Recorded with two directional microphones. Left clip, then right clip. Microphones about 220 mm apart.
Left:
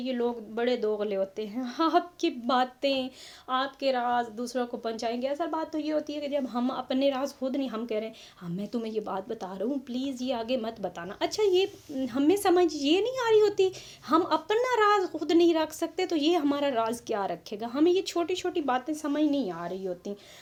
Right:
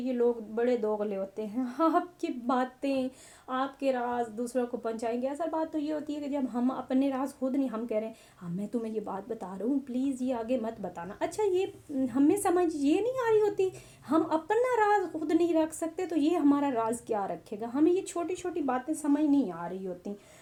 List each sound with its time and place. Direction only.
0.0 s a woman's voice: 30° left (ahead or behind)